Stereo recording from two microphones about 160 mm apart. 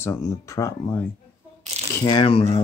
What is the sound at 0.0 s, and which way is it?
Speech, 15° left (ahead or behind).